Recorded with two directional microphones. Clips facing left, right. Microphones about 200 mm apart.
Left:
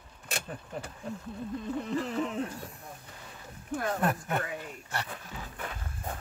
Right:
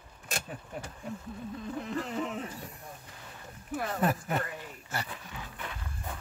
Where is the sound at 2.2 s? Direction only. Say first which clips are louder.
Left 3 dB; centre (ahead or behind).